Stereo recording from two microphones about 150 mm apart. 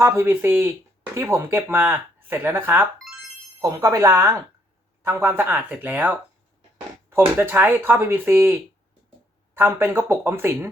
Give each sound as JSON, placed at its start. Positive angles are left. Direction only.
{"t": 0.0, "sound": "speech", "side_deg": -15}
{"t": 3.0, "sound": "music", "side_deg": 0}
{"t": 3.6, "sound": "speech", "side_deg": -20}
{"t": 7.3, "sound": "speech", "side_deg": -15}